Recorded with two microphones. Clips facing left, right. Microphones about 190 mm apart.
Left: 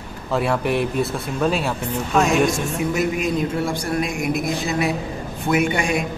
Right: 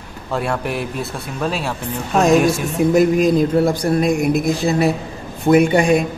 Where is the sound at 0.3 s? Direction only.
Centre (ahead or behind).